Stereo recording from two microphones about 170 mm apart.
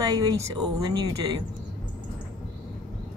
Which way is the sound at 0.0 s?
20° right (ahead or behind).